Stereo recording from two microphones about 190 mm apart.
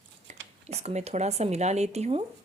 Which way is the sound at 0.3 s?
35° right (ahead or behind).